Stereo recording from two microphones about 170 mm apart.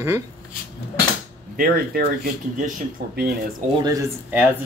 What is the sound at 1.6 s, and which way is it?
Speech, 60° right (ahead or behind).